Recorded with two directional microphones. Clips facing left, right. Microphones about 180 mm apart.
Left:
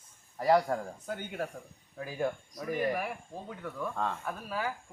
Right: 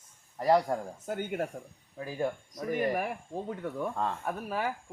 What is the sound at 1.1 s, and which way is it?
Speech, 50° right (ahead or behind).